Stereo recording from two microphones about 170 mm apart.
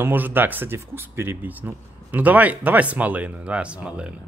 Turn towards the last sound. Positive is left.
turn(degrees=-5)  # may be behind; listen again after turning